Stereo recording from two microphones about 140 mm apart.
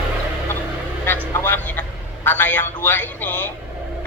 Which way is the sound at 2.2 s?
15° left (ahead or behind).